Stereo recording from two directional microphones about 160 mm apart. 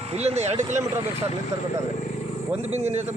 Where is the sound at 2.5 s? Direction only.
40° right (ahead or behind).